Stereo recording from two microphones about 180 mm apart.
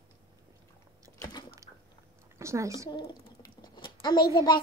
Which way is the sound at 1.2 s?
20° left (ahead or behind).